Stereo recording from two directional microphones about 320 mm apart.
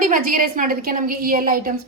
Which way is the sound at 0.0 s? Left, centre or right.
Right.